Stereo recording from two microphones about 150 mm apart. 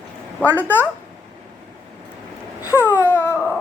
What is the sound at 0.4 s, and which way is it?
Speech, 10° right (ahead or behind).